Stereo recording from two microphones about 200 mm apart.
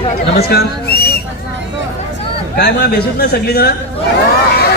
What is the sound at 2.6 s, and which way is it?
Speech, 55° left (ahead or behind).